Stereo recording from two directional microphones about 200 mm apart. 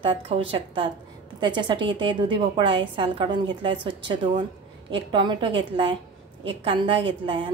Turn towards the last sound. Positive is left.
turn(degrees=-25)  # may be behind; listen again after turning